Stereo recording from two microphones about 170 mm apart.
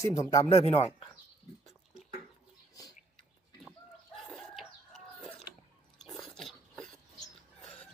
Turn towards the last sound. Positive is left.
turn(degrees=5)  # may be behind; listen again after turning